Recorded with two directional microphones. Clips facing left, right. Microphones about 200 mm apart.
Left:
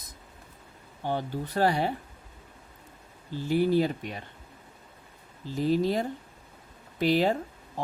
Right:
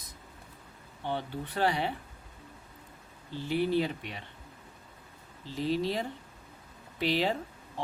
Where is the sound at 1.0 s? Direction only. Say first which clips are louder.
Left 4 dB; 40° left (ahead or behind).